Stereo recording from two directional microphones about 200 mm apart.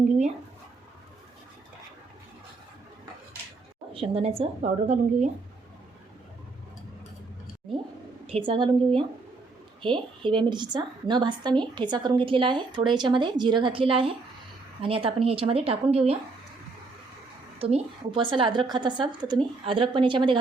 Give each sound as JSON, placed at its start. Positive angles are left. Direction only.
{"t": 3.9, "sound": "a woman's voice", "side_deg": -30}
{"t": 8.3, "sound": "a woman's voice", "side_deg": -25}
{"t": 9.8, "sound": "a woman's voice", "side_deg": -25}
{"t": 17.6, "sound": "a woman's voice", "side_deg": -30}